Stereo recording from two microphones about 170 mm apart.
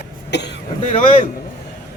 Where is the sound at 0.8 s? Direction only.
45° left (ahead or behind).